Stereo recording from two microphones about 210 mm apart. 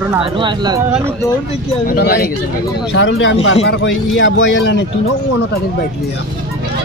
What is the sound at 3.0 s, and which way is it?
A man's voice, 60° left (ahead or behind).